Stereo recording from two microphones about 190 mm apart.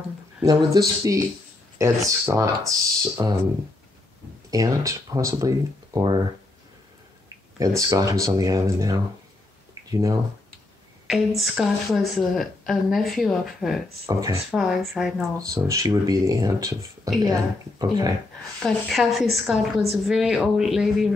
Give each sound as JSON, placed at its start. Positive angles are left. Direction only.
{"t": 0.4, "sound": "speech", "side_deg": -20}
{"t": 4.5, "sound": "speech", "side_deg": -15}
{"t": 7.5, "sound": "speech", "side_deg": -20}
{"t": 11.1, "sound": "speech", "side_deg": 0}
{"t": 14.0, "sound": "speech", "side_deg": -15}
{"t": 14.5, "sound": "speech", "side_deg": 0}
{"t": 15.3, "sound": "speech", "side_deg": -20}
{"t": 18.6, "sound": "speech", "side_deg": 0}